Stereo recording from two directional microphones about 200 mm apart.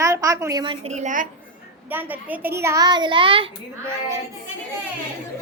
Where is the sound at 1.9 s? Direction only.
10° right (ahead or behind); by 3.5 s 25° right (ahead or behind).